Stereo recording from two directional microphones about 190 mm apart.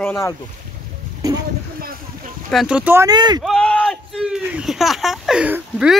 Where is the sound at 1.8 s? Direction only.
50° right (ahead or behind).